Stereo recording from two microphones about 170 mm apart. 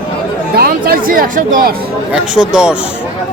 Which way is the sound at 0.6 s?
55° right (ahead or behind).